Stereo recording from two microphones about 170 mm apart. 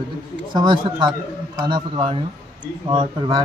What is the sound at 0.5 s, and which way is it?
Speech, 25° right (ahead or behind).